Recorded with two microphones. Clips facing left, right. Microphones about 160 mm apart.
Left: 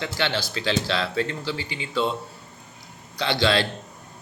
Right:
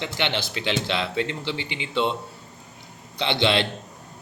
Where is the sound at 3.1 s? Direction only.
20° right (ahead or behind).